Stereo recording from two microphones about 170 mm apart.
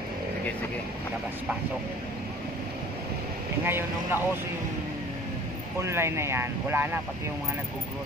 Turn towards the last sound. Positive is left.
turn(degrees=-15)  # may be behind; listen again after turning